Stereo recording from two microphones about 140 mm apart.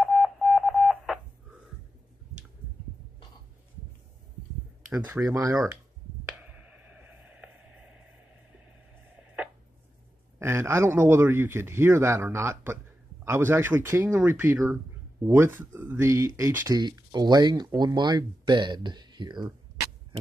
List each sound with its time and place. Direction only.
0.0 s radio: centre (ahead or behind)
4.8 s speech: 15° right (ahead or behind)
6.4 s a sound: 10° right (ahead or behind)
10.4 s a man's voice: 20° right (ahead or behind)